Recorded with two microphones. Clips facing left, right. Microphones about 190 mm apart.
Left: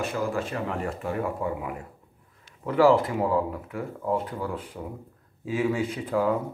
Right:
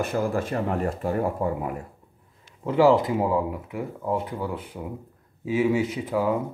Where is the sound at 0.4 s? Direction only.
50° right (ahead or behind).